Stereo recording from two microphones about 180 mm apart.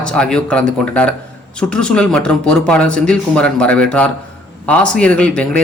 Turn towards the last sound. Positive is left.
turn(degrees=5)  # may be behind; listen again after turning